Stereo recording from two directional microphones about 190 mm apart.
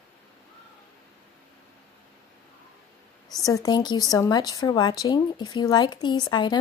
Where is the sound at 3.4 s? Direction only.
20° left (ahead or behind).